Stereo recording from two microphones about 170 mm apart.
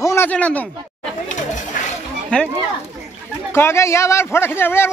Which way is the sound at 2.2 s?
5° left (ahead or behind).